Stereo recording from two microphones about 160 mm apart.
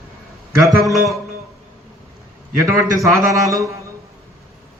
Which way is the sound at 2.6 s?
20° right (ahead or behind).